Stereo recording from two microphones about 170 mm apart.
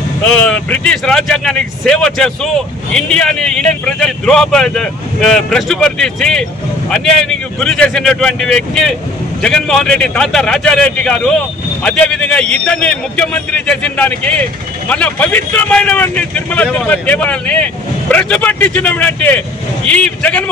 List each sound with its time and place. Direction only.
0.2 s a man's voice: 5° left (ahead or behind)